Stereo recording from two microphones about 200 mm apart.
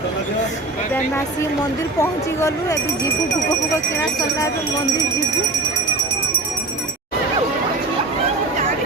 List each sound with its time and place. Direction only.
2.0 s speech: 15° left (ahead or behind)